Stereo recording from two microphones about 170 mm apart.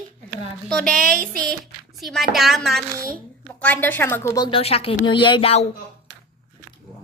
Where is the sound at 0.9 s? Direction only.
55° right (ahead or behind).